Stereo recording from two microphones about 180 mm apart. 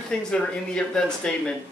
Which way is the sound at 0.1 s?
5° left (ahead or behind).